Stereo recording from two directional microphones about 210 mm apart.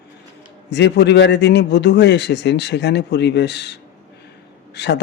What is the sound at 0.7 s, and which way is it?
A man's voice, 55° left (ahead or behind).